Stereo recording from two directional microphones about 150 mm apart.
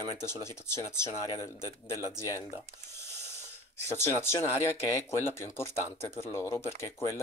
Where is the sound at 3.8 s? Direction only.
15° left (ahead or behind).